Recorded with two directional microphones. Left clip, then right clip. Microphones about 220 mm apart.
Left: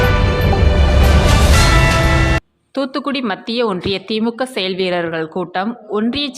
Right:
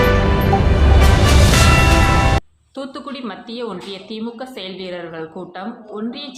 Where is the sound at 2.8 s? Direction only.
35° left (ahead or behind).